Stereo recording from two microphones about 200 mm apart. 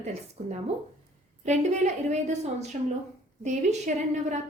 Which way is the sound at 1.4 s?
35° right (ahead or behind).